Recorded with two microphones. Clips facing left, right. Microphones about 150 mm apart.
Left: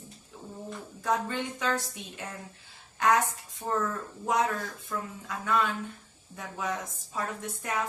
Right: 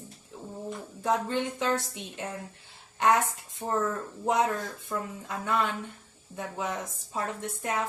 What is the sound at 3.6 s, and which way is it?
Speech, 20° right (ahead or behind).